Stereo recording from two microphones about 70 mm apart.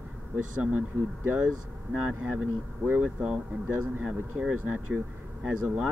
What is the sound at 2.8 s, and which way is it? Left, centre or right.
Speech, right.